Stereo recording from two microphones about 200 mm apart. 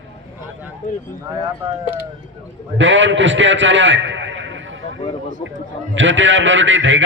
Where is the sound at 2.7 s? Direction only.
65° right (ahead or behind).